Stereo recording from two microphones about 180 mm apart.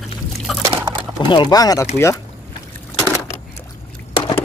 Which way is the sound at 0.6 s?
15° right (ahead or behind).